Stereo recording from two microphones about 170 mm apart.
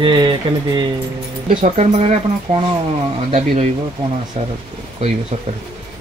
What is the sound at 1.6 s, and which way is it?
Speech, 40° right (ahead or behind).